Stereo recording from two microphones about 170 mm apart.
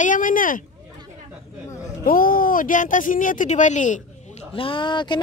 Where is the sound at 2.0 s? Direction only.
55° left (ahead or behind).